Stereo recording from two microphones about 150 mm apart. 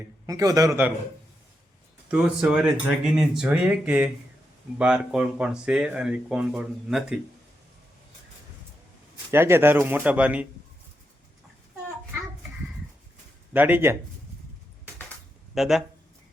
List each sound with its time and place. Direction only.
0.3 s a man's voice: 25° right (ahead or behind)
0.7 s speech: 10° right (ahead or behind)
2.0 s speech: 5° right (ahead or behind)
9.3 s speech: 15° right (ahead or behind)
13.5 s speech: 10° right (ahead or behind)
15.5 s speech: centre (ahead or behind)